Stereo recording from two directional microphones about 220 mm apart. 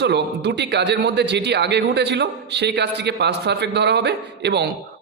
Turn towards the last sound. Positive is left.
turn(degrees=-50)  # may be behind; listen again after turning